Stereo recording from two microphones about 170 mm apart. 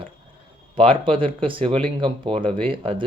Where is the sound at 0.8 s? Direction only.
30° right (ahead or behind).